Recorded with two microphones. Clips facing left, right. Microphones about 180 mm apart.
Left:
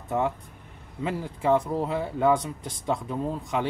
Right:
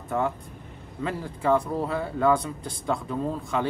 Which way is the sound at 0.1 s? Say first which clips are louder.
Even; 15° left (ahead or behind).